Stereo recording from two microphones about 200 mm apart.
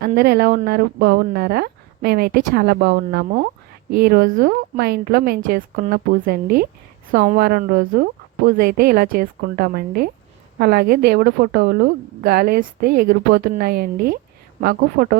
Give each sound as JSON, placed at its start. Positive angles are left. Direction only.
{"t": 0.0, "sound": "a woman's voice", "side_deg": -50}